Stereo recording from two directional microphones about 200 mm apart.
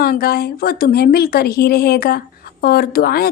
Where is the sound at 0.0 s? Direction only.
50° left (ahead or behind).